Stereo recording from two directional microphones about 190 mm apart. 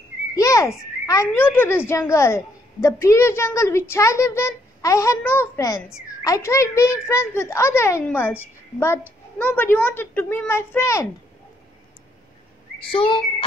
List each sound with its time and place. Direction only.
0.4 s speech: 15° left (ahead or behind)
12.9 s whistling: 25° left (ahead or behind)